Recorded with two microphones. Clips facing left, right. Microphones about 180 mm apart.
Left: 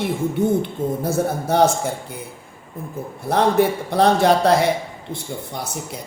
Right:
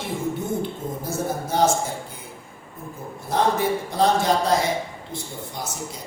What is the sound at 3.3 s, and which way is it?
Speech, 65° left (ahead or behind).